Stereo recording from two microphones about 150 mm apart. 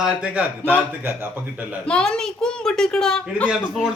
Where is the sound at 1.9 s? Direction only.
5° left (ahead or behind).